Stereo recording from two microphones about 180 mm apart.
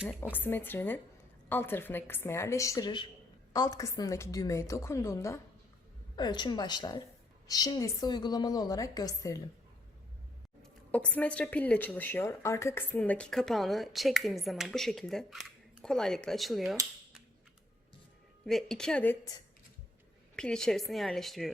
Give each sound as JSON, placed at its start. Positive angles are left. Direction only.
{"t": 0.2, "sound": "a woman's voice", "side_deg": 10}
{"t": 10.6, "sound": "speech", "side_deg": 5}
{"t": 18.4, "sound": "speech", "side_deg": 0}
{"t": 20.3, "sound": "speech", "side_deg": 5}